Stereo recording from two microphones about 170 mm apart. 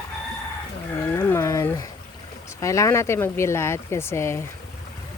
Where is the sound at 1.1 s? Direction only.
15° left (ahead or behind).